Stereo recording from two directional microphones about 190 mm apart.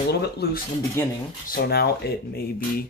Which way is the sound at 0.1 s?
60° left (ahead or behind).